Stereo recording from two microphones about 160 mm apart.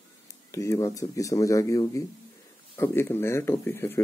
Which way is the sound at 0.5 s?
20° left (ahead or behind).